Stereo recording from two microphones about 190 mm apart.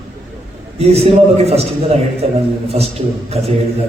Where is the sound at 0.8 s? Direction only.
35° right (ahead or behind).